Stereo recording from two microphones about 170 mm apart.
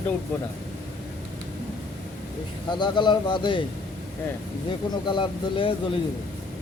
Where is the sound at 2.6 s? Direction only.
25° left (ahead or behind).